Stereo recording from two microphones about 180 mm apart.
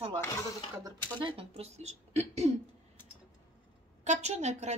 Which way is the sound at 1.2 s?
30° right (ahead or behind).